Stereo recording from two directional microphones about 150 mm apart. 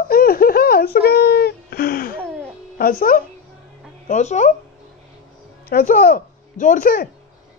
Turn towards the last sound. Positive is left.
turn(degrees=80)